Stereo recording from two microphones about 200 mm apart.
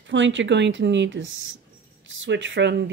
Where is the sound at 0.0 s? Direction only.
65° right (ahead or behind).